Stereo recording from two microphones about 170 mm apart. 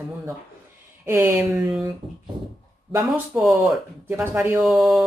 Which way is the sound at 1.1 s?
15° right (ahead or behind).